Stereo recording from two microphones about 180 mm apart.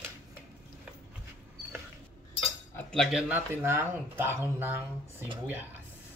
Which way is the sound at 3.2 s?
10° right (ahead or behind).